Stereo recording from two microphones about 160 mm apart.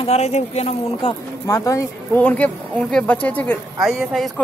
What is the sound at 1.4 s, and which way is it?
Speech, 20° left (ahead or behind).